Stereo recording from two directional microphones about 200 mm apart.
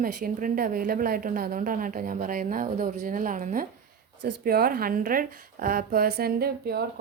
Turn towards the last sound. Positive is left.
turn(degrees=-50)  # may be behind; listen again after turning